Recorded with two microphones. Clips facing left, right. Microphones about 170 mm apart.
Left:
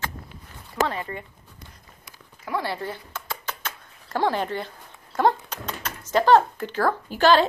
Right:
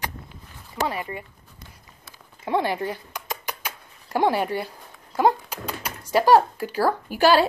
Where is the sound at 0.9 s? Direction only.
15° right (ahead or behind).